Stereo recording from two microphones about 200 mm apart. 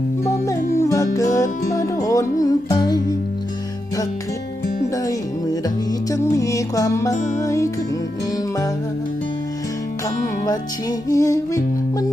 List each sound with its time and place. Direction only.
0.3 s music: 15° left (ahead or behind)
5.0 s music: 20° left (ahead or behind)
10.4 s music: 20° left (ahead or behind)